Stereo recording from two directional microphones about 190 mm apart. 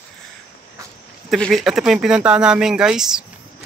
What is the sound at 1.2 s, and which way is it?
Speech, centre (ahead or behind).